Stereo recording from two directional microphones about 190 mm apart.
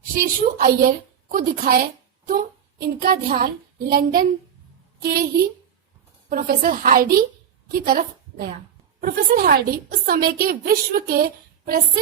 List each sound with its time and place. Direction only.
0.1 s a woman's voice: 45° right (ahead or behind)